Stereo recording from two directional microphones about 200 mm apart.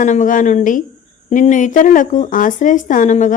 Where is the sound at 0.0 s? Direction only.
40° left (ahead or behind).